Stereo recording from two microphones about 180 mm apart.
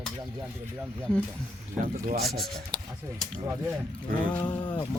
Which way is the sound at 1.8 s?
55° right (ahead or behind).